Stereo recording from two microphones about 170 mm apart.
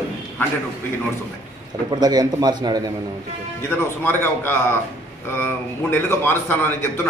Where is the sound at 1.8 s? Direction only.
25° right (ahead or behind).